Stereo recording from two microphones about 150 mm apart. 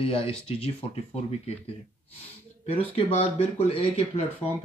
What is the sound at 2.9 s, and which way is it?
Speech, 40° left (ahead or behind).